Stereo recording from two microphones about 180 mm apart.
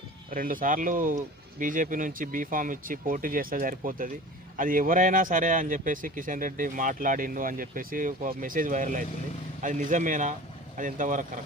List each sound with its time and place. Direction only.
0.3 s speech: 50° right (ahead or behind)